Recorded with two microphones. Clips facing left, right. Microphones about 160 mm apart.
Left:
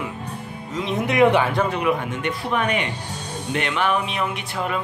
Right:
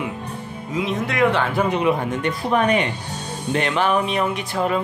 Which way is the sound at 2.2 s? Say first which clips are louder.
Right 4 dB; 35° right (ahead or behind).